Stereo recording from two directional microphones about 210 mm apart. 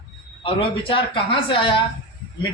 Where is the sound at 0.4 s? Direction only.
25° left (ahead or behind).